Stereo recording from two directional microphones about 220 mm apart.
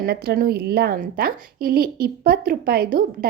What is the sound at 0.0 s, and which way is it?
A woman's voice, 45° right (ahead or behind).